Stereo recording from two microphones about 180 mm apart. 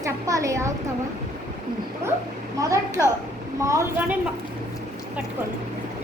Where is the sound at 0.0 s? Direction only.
15° right (ahead or behind).